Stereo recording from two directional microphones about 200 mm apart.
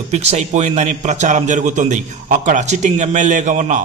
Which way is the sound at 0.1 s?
35° right (ahead or behind).